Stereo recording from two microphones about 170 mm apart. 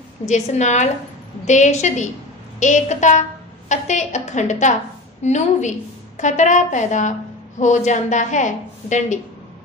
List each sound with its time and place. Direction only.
0.3 s a woman's voice: 45° left (ahead or behind)